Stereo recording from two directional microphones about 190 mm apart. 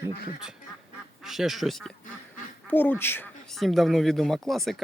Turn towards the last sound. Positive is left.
turn(degrees=0)  # may be behind; listen again after turning